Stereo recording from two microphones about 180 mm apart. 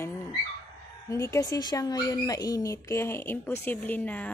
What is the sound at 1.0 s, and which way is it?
A woman's voice, 15° left (ahead or behind).